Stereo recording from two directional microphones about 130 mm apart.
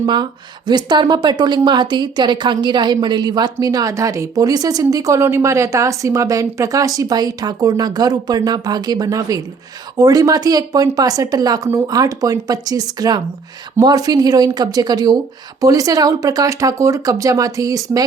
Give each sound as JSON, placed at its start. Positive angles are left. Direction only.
{"t": 0.0, "sound": "speech", "side_deg": -35}